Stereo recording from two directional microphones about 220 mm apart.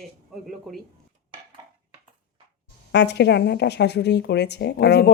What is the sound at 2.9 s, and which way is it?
Speech, 50° left (ahead or behind).